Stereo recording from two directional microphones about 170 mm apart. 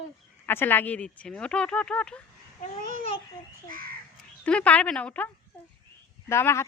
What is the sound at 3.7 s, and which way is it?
Speech, 60° right (ahead or behind).